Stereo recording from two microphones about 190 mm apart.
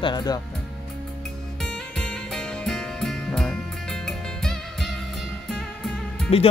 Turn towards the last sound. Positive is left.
turn(degrees=5)  # may be behind; listen again after turning